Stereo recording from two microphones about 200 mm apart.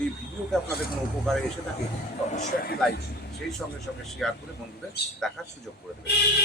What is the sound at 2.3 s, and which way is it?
Speech, 45° left (ahead or behind).